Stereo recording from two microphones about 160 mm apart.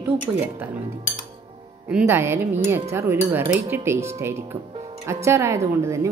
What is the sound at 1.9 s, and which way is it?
A woman's voice, 15° right (ahead or behind).